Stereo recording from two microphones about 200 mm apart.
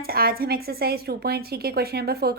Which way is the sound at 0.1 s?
50° right (ahead or behind).